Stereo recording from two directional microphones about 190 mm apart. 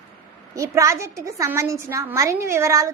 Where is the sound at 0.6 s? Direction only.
15° right (ahead or behind).